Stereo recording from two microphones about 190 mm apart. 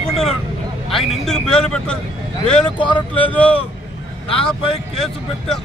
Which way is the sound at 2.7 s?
25° left (ahead or behind).